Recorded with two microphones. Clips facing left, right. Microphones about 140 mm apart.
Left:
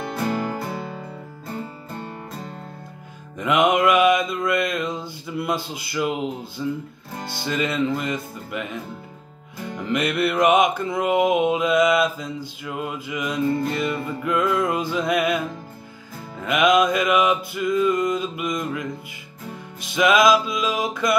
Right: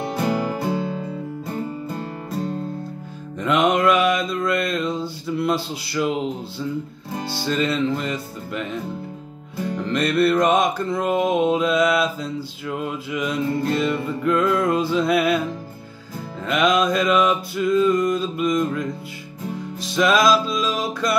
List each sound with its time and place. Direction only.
0.3 s music: 15° right (ahead or behind)
3.3 s music: 10° left (ahead or behind)
5.7 s mantra: 5° left (ahead or behind)
7.4 s music: 10° left (ahead or behind)
9.8 s music: 10° left (ahead or behind)
11.0 s mantra: 5° left (ahead or behind)
16.4 s music: 10° left (ahead or behind)
20.0 s music: 15° left (ahead or behind)